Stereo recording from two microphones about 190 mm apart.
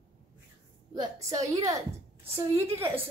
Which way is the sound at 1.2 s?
20° right (ahead or behind).